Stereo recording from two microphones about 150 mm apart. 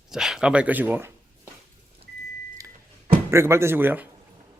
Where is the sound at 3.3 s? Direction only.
20° right (ahead or behind).